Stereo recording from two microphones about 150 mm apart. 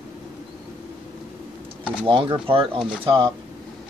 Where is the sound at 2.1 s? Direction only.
35° right (ahead or behind).